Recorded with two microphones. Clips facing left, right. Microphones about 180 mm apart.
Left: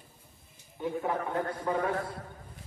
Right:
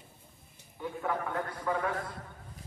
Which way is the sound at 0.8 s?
25° left (ahead or behind).